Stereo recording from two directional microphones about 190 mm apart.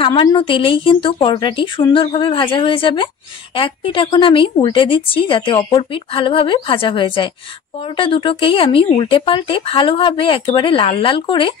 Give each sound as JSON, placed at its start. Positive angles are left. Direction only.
{"t": 0.0, "sound": "speech", "side_deg": 25}